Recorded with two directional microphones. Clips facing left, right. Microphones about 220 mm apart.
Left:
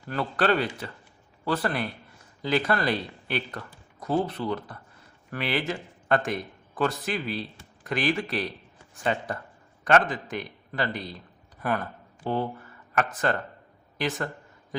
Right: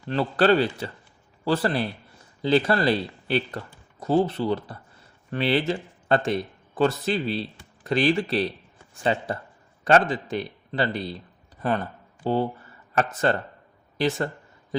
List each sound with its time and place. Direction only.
0.1 s a man's voice: 30° right (ahead or behind)
12.2 s speech: 30° right (ahead or behind)